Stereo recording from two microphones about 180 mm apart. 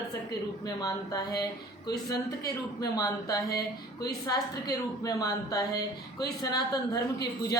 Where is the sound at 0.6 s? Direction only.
20° left (ahead or behind).